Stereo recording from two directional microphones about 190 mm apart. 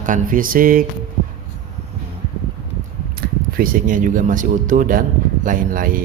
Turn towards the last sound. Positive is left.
turn(degrees=-45)  # may be behind; listen again after turning